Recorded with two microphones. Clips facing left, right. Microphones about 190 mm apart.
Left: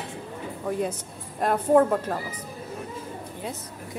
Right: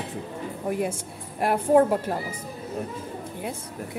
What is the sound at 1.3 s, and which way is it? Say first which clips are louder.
Speech: even; 10° right (ahead or behind).